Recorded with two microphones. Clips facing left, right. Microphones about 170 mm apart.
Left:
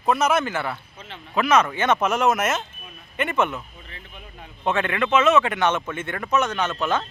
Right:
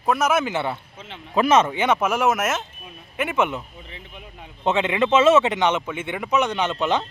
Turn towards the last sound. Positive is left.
turn(degrees=-15)  # may be behind; listen again after turning